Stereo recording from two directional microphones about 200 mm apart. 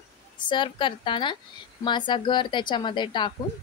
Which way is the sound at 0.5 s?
25° left (ahead or behind).